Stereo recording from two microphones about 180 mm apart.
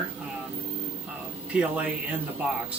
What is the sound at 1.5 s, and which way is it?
Speech, 5° right (ahead or behind).